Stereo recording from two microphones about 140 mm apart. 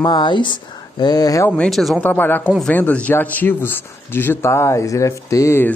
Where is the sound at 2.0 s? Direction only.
15° left (ahead or behind).